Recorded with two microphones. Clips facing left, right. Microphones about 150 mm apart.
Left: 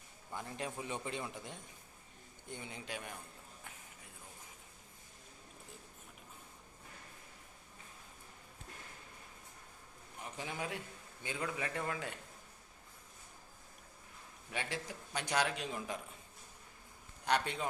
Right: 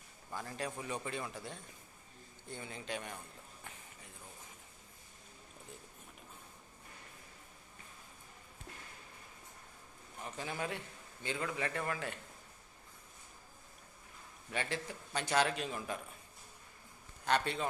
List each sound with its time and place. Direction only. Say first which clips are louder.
0.3 s a man's voice: right 1 dB; 20° left (ahead or behind)
10.3 s a man's voice: right 2 dB; 15° left (ahead or behind)
14.5 s a man's voice: right 2 dB; 10° left (ahead or behind)
17.2 s a man's voice: right 1 dB; 15° left (ahead or behind)